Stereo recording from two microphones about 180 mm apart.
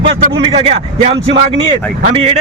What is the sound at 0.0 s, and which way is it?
A man's voice, 30° right (ahead or behind).